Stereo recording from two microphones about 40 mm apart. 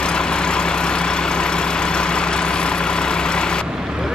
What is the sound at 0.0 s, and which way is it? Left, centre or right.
Vehicle, left.